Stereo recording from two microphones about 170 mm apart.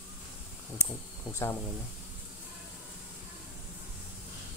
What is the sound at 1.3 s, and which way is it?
Speech, 15° left (ahead or behind).